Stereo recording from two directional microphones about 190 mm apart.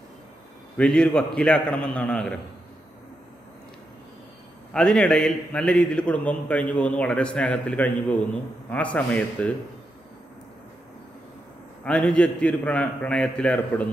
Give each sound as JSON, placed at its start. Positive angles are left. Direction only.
{"t": 0.7, "sound": "a man's voice", "side_deg": 5}
{"t": 4.7, "sound": "a man's voice", "side_deg": 5}
{"t": 11.8, "sound": "a man's voice", "side_deg": 5}